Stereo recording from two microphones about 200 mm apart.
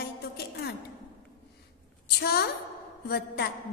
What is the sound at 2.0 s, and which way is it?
Music, 55° left (ahead or behind).